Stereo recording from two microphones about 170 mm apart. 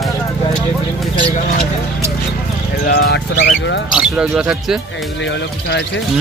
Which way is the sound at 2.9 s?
70° left (ahead or behind).